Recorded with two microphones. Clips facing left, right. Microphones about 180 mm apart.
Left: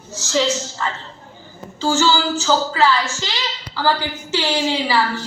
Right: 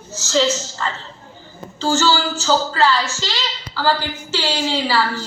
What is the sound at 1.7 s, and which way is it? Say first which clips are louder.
A woman's voice: even; 10° left (ahead or behind).